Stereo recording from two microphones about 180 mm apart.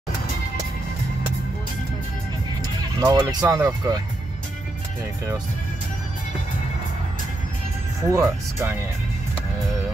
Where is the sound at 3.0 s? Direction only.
20° right (ahead or behind).